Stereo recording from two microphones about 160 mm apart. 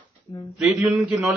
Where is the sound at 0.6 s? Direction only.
Centre (ahead or behind).